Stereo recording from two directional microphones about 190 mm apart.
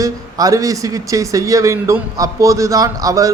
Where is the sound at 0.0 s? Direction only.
20° right (ahead or behind).